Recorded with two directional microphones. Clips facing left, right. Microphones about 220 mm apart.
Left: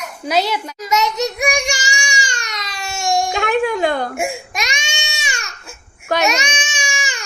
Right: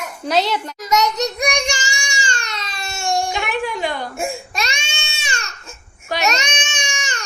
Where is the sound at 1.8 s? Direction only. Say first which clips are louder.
Left 2 dB; 15° left (ahead or behind).